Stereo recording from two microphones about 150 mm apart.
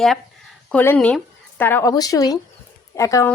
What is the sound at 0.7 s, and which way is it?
Speech, 10° left (ahead or behind).